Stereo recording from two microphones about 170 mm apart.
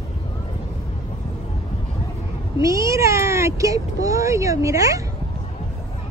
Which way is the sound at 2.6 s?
20° right (ahead or behind).